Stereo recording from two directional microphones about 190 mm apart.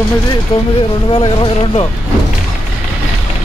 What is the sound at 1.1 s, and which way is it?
Speech, 30° left (ahead or behind).